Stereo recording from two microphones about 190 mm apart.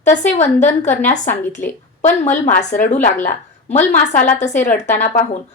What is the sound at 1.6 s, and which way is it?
Speech, 10° left (ahead or behind).